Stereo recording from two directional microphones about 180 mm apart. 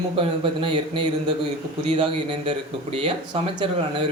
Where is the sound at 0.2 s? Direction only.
30° right (ahead or behind).